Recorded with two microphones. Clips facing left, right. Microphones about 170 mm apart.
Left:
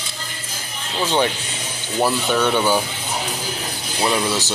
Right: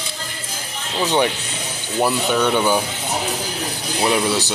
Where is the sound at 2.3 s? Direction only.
10° right (ahead or behind).